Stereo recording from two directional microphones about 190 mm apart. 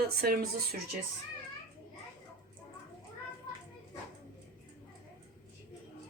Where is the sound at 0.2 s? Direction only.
50° right (ahead or behind).